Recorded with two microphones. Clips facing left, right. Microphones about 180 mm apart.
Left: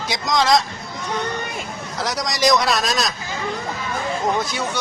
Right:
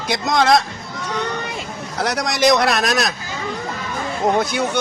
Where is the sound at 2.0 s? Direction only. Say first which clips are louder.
Right 3 dB; 60° right (ahead or behind).